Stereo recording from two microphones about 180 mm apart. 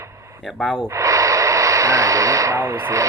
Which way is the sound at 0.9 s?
15° right (ahead or behind).